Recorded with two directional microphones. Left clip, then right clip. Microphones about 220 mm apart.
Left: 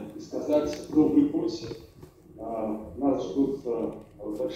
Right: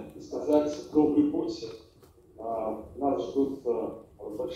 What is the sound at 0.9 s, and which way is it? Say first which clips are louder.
Speech: left 1 dB; 40° right (ahead or behind).